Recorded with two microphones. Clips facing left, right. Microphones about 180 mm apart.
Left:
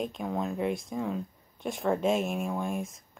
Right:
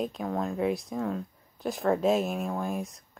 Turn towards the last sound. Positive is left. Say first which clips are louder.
# even
turn(degrees=0)  # may be behind; listen again after turning